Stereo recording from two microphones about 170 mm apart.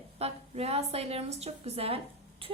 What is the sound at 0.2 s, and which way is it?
A woman's voice, 35° right (ahead or behind).